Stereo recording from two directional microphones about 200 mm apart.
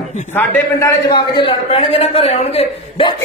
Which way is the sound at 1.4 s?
25° left (ahead or behind).